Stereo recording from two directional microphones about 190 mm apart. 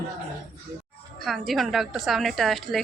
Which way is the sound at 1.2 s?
Centre (ahead or behind).